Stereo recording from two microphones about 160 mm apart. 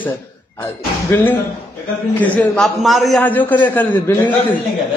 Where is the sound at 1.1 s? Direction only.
15° left (ahead or behind).